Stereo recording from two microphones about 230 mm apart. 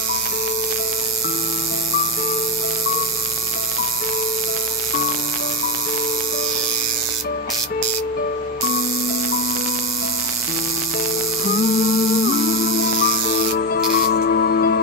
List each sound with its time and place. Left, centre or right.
12.4 s music: left